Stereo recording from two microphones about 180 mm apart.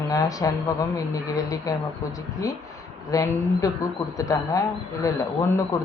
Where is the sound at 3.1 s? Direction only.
20° left (ahead or behind).